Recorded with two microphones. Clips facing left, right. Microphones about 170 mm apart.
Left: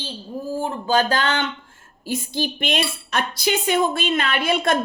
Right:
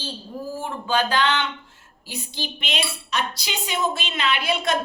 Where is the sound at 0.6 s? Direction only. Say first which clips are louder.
Left 4 dB; 35° left (ahead or behind).